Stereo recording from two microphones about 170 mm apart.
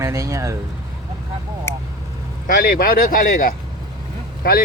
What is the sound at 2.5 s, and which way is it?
Speech, 55° left (ahead or behind).